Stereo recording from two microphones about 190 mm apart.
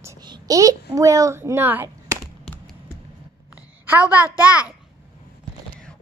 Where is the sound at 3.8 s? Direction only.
10° right (ahead or behind).